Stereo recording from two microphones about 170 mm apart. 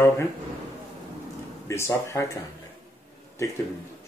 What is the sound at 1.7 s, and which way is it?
Speech, 15° left (ahead or behind).